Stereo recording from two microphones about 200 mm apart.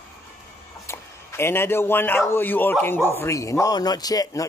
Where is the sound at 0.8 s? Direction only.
10° left (ahead or behind).